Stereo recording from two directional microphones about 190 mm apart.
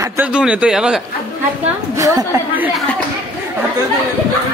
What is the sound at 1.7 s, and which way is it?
Speech, 15° right (ahead or behind).